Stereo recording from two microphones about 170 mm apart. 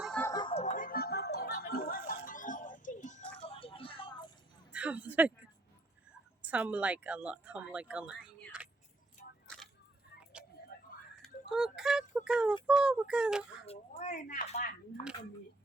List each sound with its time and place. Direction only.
0.2 s a sound: 15° left (ahead or behind)
0.4 s music: 40° left (ahead or behind)
3.4 s music: 35° left (ahead or behind)
4.7 s a sound: 10° right (ahead or behind)
6.4 s speech: 10° right (ahead or behind)
8.5 s keys jangling: 5° right (ahead or behind)
9.2 s vehicle: 55° left (ahead or behind)
11.2 s speech: 5° right (ahead or behind)
13.9 s speech: 45° left (ahead or behind)